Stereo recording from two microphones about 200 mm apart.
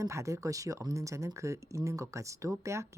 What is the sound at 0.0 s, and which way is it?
Speech, 15° right (ahead or behind).